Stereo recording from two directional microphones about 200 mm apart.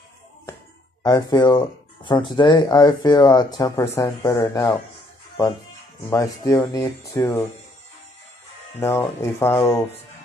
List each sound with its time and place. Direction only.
1.0 s speech: 20° left (ahead or behind)
6.0 s speech: 15° left (ahead or behind)
8.7 s speech: 10° left (ahead or behind)